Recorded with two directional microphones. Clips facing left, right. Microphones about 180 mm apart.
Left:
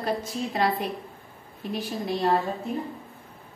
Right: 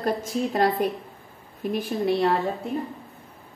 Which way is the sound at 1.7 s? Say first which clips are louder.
Right 5 dB; 55° right (ahead or behind).